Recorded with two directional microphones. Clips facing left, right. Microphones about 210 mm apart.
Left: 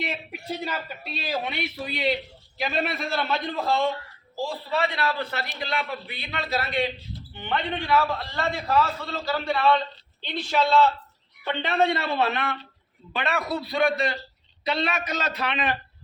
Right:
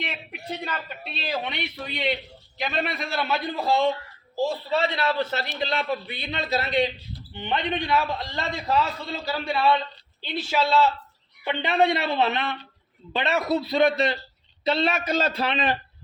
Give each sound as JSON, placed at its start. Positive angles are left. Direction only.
{"t": 0.6, "sound": "a man's voice", "side_deg": 5}
{"t": 4.4, "sound": "a man's voice", "side_deg": -25}